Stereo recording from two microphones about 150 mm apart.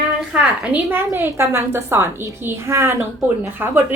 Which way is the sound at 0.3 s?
10° right (ahead or behind).